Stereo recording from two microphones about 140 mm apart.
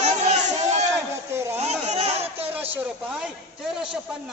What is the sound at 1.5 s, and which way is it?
Speech, 50° right (ahead or behind).